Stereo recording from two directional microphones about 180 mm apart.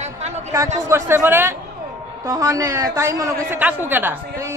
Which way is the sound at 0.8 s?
15° right (ahead or behind).